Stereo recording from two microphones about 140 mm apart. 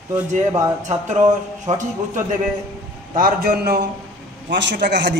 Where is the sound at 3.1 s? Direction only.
90° right.